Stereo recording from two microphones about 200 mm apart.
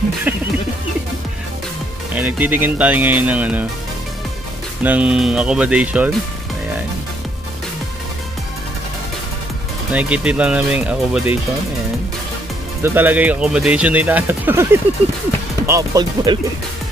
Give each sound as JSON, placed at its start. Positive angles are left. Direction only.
{"t": 2.1, "sound": "speech", "side_deg": -10}
{"t": 4.8, "sound": "speech", "side_deg": -5}
{"t": 9.9, "sound": "speech", "side_deg": -5}
{"t": 12.8, "sound": "speech", "side_deg": -10}